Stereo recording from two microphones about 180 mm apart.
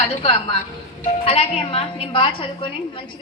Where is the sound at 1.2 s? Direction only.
35° left (ahead or behind).